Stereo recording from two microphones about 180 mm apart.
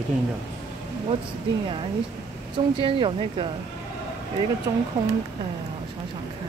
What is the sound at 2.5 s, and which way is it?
Speech, 30° right (ahead or behind).